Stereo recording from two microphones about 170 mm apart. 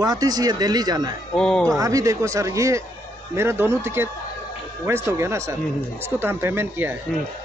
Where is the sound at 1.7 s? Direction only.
20° right (ahead or behind).